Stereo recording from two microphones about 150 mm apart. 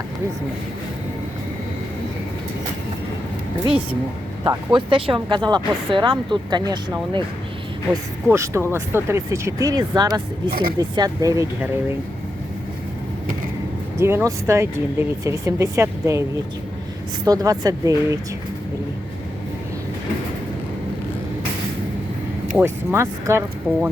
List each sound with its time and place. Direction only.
4.4 s speech: 35° right (ahead or behind)
8.3 s speech: 20° right (ahead or behind)
10.5 s speech: 80° right
10.8 s speech: 25° right (ahead or behind)
14.0 s speech: 15° right (ahead or behind)
17.2 s speech: 25° right (ahead or behind)
22.6 s speech: 15° right (ahead or behind)